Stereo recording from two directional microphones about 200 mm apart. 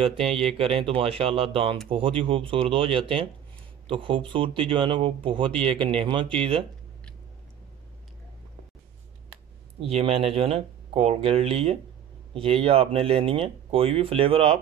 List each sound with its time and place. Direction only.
0.0 s speech: 25° right (ahead or behind)
9.8 s speech: 30° right (ahead or behind)